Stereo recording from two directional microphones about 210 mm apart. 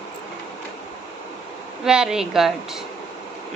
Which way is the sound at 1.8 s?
5° right (ahead or behind).